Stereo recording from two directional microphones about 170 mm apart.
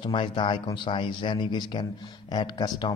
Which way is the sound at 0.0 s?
30° left (ahead or behind).